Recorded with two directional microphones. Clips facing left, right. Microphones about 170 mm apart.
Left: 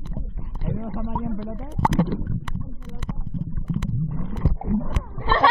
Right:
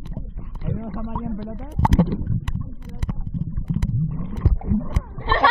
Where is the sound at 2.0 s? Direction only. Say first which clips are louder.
Right 2 dB; centre (ahead or behind).